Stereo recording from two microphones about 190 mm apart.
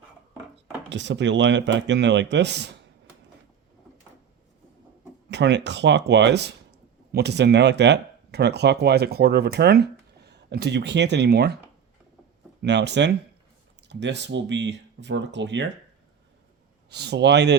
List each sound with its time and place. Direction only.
0.9 s speech: 70° right (ahead or behind)
5.3 s speech: 65° right (ahead or behind)
12.6 s speech: 65° right (ahead or behind)
16.9 s speech: 60° right (ahead or behind)